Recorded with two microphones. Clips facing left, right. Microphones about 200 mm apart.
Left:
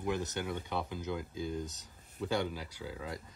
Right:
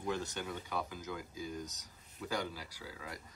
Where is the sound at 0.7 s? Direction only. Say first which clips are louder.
Left 3 dB; 25° left (ahead or behind).